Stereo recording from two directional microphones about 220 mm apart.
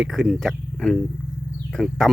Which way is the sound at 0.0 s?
Centre (ahead or behind).